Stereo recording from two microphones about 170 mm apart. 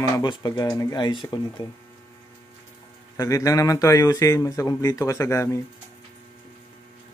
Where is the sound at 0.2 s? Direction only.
25° left (ahead or behind).